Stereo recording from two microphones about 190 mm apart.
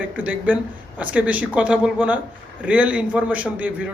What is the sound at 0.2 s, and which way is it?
Speech, 10° right (ahead or behind).